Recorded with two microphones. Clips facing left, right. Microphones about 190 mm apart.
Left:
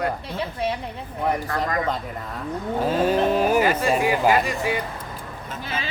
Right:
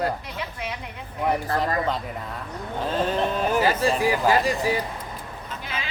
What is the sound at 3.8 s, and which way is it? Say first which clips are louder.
Speech: left 1 dB; 35° right (ahead or behind).